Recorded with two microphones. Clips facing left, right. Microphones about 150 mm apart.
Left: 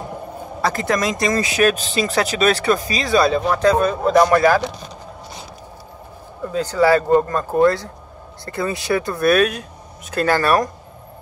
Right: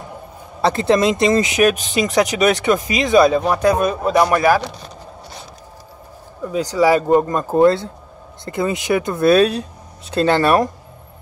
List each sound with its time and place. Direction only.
0.6 s speech: 25° right (ahead or behind)
6.5 s speech: 15° right (ahead or behind)